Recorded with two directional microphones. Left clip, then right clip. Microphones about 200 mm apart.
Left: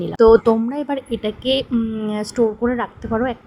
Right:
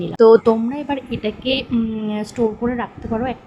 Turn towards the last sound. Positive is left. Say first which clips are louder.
# left 2 dB
turn(degrees=15)  # may be behind; listen again after turning